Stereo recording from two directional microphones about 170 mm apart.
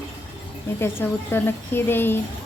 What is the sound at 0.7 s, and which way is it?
Speech, 15° left (ahead or behind).